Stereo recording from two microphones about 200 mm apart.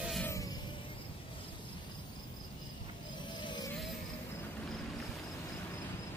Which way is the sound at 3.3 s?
20° left (ahead or behind).